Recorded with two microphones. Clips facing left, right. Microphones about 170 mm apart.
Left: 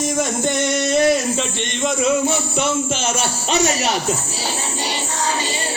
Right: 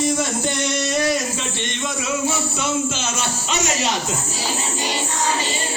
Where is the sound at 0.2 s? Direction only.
50° left (ahead or behind).